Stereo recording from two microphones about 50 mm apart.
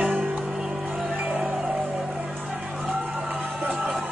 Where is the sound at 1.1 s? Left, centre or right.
Right.